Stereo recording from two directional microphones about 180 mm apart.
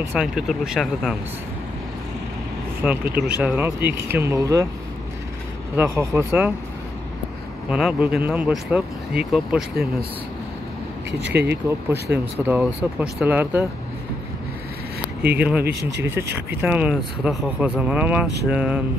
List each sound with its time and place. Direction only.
0.0 s speech: 5° right (ahead or behind)
2.8 s speech: 10° right (ahead or behind)
5.8 s speech: 15° right (ahead or behind)
7.7 s speech: 5° right (ahead or behind)
11.1 s speech: 75° right (ahead or behind)
11.4 s speech: 10° right (ahead or behind)
15.3 s speech: 5° right (ahead or behind)